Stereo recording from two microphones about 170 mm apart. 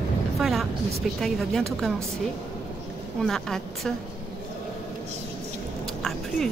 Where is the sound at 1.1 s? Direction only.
Centre (ahead or behind).